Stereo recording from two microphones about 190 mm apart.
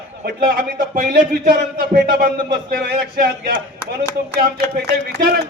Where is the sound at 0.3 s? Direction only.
55° right (ahead or behind).